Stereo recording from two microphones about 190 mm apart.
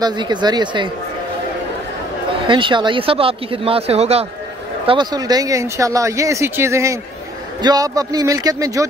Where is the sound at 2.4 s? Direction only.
25° right (ahead or behind).